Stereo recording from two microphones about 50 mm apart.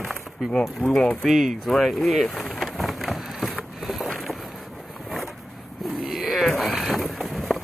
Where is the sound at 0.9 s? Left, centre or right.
Centre.